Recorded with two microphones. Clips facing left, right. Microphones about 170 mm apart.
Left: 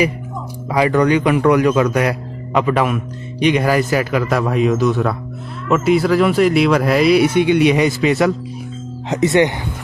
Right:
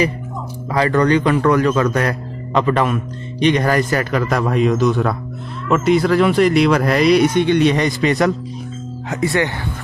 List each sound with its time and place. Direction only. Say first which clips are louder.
0.7 s a man's voice: left 1 dB; 10° left (ahead or behind)
9.1 s speech: left 5 dB; 20° left (ahead or behind)